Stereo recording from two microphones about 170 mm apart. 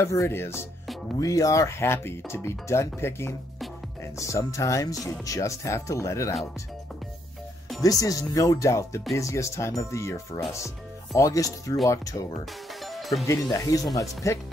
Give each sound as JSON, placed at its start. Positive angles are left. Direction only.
{"t": 0.0, "sound": "speech", "side_deg": 15}
{"t": 7.8, "sound": "speech", "side_deg": 20}
{"t": 12.8, "sound": "music", "side_deg": 0}
{"t": 13.5, "sound": "speech", "side_deg": 20}